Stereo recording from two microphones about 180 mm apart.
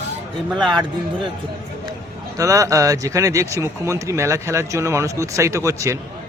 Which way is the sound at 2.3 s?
20° right (ahead or behind).